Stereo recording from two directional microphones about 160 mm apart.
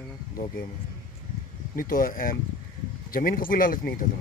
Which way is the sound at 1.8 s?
60° left (ahead or behind).